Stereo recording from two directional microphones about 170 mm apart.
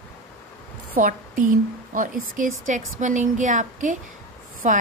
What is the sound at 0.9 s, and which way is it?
A woman's voice, 50° right (ahead or behind).